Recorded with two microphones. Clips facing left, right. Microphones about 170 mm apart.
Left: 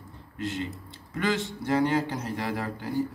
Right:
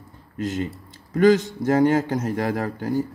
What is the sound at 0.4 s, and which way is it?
A man's voice, 45° right (ahead or behind).